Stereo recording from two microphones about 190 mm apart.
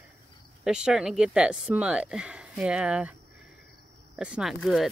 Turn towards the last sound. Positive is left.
turn(degrees=0)  # may be behind; listen again after turning